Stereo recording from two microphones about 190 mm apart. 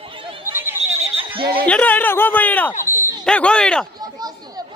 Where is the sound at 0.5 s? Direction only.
10° right (ahead or behind).